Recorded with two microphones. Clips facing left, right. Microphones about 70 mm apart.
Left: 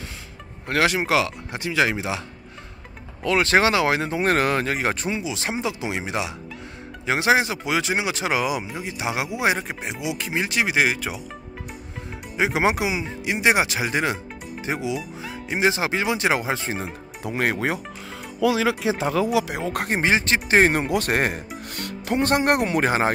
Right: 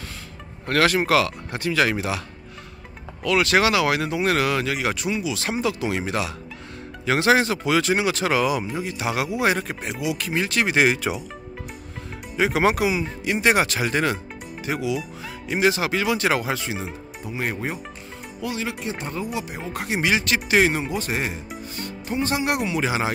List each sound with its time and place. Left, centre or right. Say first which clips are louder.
0.7 s speech: right 2 dB; centre
3.3 s speech: even; left
10.7 s speech: right 2 dB; centre
12.4 s speech: right 1 dB; centre
17.2 s speech: left 4 dB; left
18.8 s speech: left 7 dB; left
19.9 s speech: even; left
20.7 s speech: left 4 dB; left